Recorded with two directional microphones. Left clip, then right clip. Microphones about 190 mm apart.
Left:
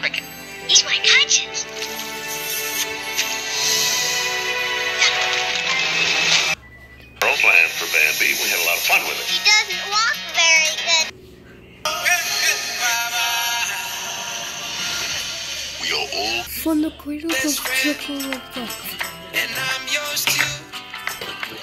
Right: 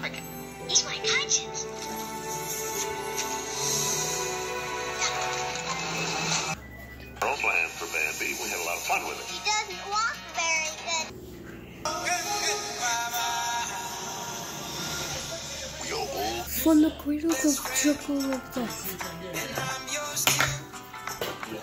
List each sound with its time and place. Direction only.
0.7 s music: 20° left (ahead or behind)
7.2 s radio: 20° left (ahead or behind)
11.8 s synthetic singing: 20° left (ahead or behind)
17.3 s music: 20° left (ahead or behind)